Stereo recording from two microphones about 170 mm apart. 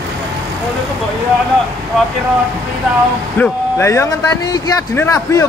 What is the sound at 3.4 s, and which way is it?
Speech, 15° left (ahead or behind).